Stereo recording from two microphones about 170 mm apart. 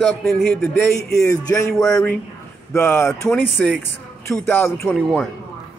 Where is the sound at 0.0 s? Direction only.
5° left (ahead or behind).